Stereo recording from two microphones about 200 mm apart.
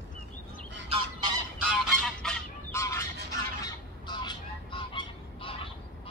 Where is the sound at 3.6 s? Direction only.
20° left (ahead or behind).